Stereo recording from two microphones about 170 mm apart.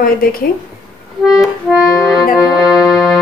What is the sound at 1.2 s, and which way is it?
Accordion, centre (ahead or behind).